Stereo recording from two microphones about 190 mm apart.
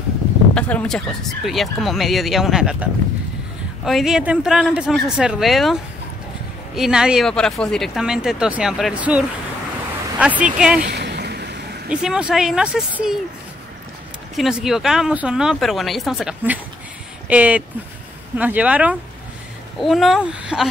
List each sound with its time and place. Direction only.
0.6 s speech: 5° left (ahead or behind)
10.8 s vehicle: 60° right (ahead or behind)
11.9 s speech: 5° right (ahead or behind)
14.3 s speech: centre (ahead or behind)